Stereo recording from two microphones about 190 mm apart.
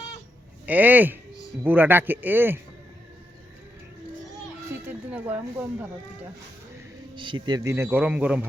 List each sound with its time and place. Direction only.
0.6 s speech: 10° right (ahead or behind)
4.9 s speech: 10° right (ahead or behind)
7.2 s speech: 25° right (ahead or behind); by 8.4 s 5° right (ahead or behind)